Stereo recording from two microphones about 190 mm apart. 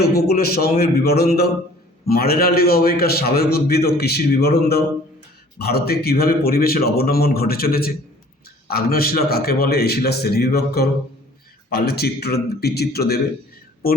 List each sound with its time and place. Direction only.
0.0 s a man's voice: 55° left (ahead or behind)